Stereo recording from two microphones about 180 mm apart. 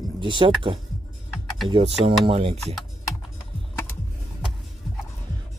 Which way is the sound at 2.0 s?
30° right (ahead or behind).